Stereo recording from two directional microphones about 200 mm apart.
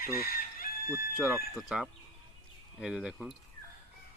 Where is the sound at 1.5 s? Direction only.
Centre (ahead or behind).